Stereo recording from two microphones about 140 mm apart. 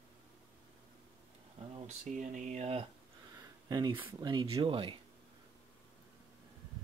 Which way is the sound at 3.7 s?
30° right (ahead or behind).